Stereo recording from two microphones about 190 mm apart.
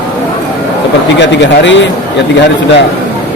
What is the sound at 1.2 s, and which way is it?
Speech, 70° left (ahead or behind).